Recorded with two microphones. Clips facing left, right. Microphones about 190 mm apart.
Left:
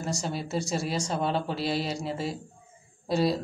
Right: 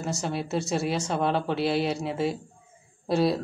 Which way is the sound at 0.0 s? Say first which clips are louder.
Right 2 dB; centre (ahead or behind).